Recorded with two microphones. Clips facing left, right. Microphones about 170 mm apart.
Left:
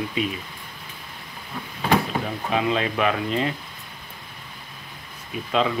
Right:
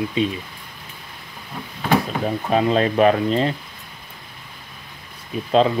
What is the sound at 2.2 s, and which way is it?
Speech, 40° right (ahead or behind).